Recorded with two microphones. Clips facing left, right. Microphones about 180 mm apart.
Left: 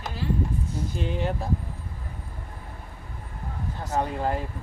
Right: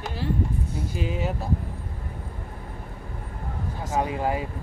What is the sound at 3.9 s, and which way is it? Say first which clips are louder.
Speech: right 1 dB; 5° right (ahead or behind).